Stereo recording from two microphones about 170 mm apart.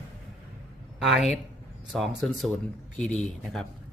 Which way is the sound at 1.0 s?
Centre (ahead or behind).